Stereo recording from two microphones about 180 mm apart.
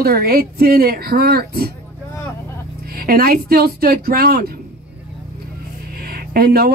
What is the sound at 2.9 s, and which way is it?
A woman's voice, 55° right (ahead or behind).